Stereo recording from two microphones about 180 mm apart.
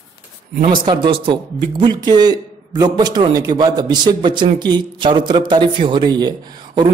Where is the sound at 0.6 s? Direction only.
25° right (ahead or behind).